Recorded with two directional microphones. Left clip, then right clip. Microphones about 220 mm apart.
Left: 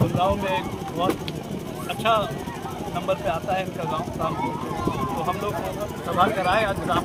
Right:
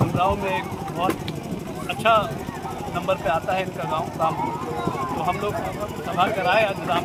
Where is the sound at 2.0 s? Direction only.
10° right (ahead or behind).